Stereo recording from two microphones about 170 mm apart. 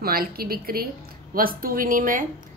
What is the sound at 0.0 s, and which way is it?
Speech, 65° right (ahead or behind).